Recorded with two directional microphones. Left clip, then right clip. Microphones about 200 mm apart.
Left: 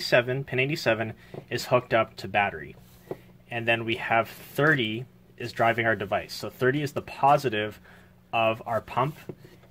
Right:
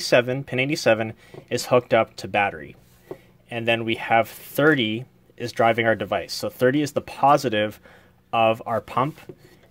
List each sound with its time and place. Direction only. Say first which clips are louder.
0.0 s speech: right 4 dB; 50° right (ahead or behind)